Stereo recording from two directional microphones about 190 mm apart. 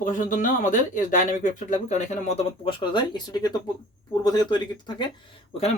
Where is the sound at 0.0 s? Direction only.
45° left (ahead or behind); by 5.0 s 25° left (ahead or behind).